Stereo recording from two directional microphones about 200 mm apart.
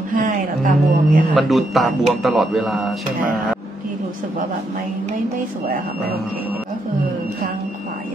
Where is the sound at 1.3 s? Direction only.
Centre (ahead or behind).